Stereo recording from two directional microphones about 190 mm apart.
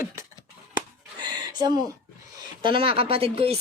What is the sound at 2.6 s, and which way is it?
Speech, 30° right (ahead or behind).